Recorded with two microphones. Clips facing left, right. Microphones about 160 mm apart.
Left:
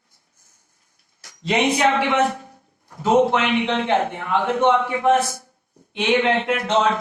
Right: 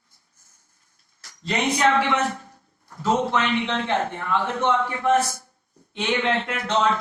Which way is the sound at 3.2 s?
15° left (ahead or behind).